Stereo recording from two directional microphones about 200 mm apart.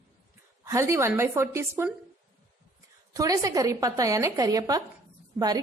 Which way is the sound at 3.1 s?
15° right (ahead or behind).